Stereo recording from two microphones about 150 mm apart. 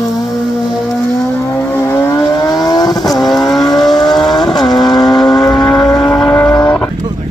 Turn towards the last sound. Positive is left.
turn(degrees=15)  # may be behind; listen again after turning